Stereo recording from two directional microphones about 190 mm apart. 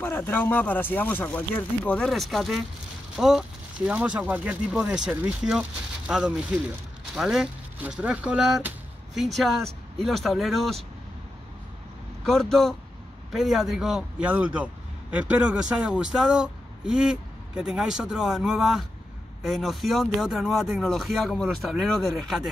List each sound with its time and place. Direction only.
0.0 s a man's voice: 10° left (ahead or behind)
12.3 s a man's voice: centre (ahead or behind)